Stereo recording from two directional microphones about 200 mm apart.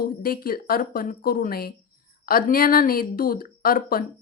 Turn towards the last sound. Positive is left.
turn(degrees=45)  # may be behind; listen again after turning